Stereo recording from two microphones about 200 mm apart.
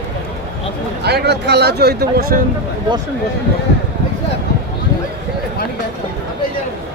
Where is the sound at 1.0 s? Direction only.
55° right (ahead or behind).